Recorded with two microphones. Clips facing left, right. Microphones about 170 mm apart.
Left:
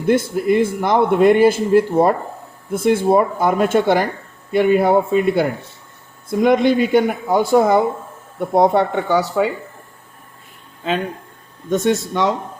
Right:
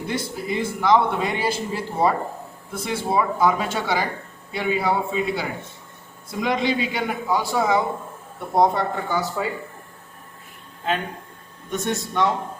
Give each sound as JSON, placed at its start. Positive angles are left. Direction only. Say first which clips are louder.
{"t": 0.1, "sound": "a man's voice", "louder": "left 12 dB", "side_deg": 55}
{"t": 11.7, "sound": "speech", "louder": "left 8 dB", "side_deg": 90}